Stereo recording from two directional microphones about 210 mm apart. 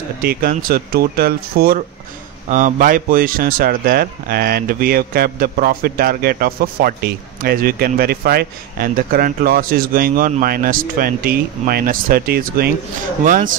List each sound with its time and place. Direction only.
0.2 s speech: 45° right (ahead or behind)